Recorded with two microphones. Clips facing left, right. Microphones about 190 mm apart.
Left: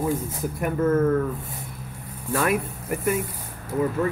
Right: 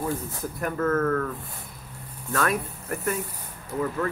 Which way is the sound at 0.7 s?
15° left (ahead or behind).